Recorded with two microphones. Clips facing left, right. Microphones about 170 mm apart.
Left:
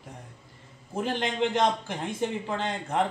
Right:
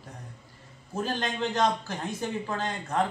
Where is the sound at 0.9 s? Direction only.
20° left (ahead or behind).